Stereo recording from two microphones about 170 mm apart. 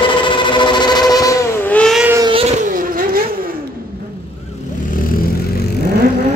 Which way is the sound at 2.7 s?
55° right (ahead or behind).